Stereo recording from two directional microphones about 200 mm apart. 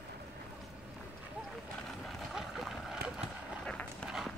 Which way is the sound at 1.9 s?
Centre (ahead or behind).